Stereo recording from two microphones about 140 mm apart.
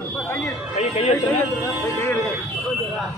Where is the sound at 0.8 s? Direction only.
50° left (ahead or behind).